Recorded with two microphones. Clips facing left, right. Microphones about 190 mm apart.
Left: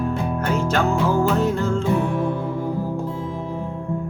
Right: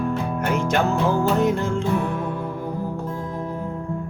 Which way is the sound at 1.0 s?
15° right (ahead or behind).